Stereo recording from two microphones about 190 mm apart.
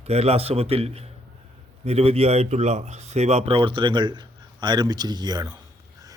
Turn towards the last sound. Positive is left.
turn(degrees=-20)  # may be behind; listen again after turning